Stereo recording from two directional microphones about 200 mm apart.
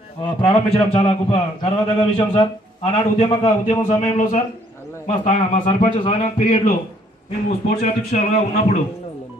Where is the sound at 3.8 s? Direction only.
40° left (ahead or behind).